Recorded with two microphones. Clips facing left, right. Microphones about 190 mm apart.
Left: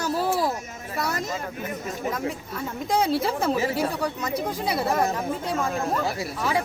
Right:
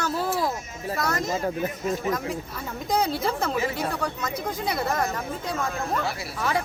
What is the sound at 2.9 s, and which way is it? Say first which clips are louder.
Speech: left 2 dB; 5° left (ahead or behind).